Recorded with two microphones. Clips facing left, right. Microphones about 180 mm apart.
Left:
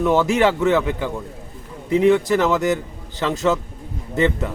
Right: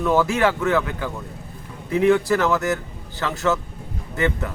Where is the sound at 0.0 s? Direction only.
20° left (ahead or behind).